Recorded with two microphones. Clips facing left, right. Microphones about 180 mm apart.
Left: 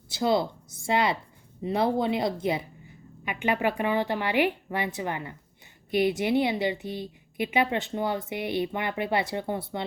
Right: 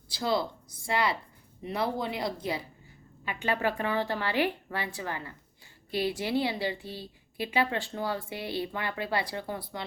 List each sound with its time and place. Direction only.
0.1 s a woman's voice: 25° left (ahead or behind)